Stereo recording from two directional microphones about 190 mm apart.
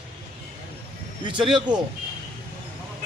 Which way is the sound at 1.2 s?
25° right (ahead or behind).